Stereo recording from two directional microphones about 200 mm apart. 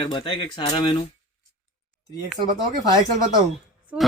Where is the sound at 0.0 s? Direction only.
25° left (ahead or behind).